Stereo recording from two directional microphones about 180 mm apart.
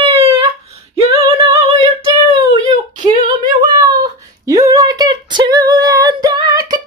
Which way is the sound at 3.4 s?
20° right (ahead or behind).